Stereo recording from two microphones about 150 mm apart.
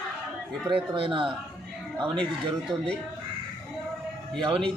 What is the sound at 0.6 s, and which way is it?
Speech, 35° right (ahead or behind).